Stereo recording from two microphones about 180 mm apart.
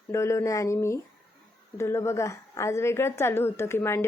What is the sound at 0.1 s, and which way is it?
Speech, 15° left (ahead or behind).